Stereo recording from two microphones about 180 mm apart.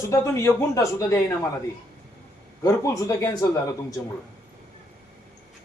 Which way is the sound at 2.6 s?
15° left (ahead or behind).